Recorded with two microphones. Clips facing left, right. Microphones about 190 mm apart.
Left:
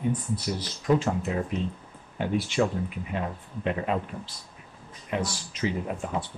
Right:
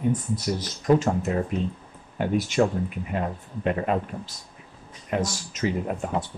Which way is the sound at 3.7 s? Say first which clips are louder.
Right 3 dB; 50° right (ahead or behind).